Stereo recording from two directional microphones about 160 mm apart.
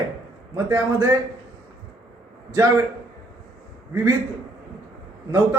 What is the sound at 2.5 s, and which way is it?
Speech, 20° right (ahead or behind).